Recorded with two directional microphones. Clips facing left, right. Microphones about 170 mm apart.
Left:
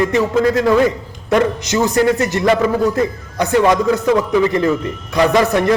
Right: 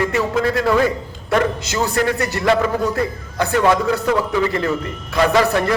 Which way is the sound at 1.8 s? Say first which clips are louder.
Left 5 dB; 20° left (ahead or behind).